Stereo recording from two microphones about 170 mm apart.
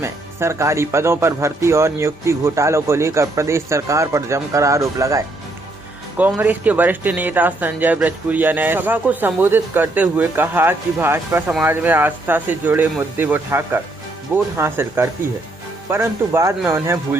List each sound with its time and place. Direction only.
0.0 s speech: 15° right (ahead or behind)